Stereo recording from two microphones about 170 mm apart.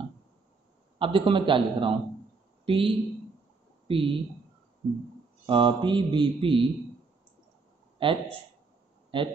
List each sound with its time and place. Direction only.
0.9 s speech: 30° right (ahead or behind)
5.5 s speech: 30° right (ahead or behind)
8.0 s speech: 30° right (ahead or behind)